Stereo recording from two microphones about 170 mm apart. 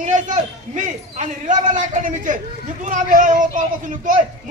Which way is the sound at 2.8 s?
50° right (ahead or behind).